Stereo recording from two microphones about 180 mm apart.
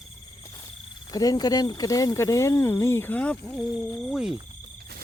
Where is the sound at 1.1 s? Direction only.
20° left (ahead or behind); by 4.4 s 5° right (ahead or behind).